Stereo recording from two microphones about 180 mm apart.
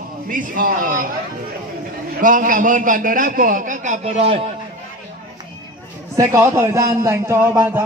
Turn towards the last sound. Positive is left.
turn(degrees=-15)  # may be behind; listen again after turning